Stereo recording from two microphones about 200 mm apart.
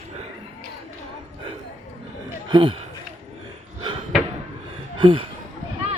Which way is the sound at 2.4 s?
25° right (ahead or behind).